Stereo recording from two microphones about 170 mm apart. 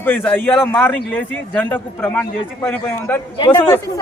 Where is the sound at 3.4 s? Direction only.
25° left (ahead or behind).